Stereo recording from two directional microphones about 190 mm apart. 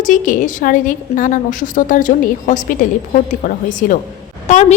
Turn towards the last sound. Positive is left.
turn(degrees=40)  # may be behind; listen again after turning